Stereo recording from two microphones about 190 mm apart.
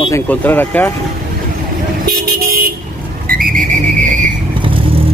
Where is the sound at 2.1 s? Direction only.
50° right (ahead or behind).